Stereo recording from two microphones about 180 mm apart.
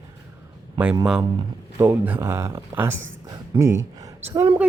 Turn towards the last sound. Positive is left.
turn(degrees=-15)  # may be behind; listen again after turning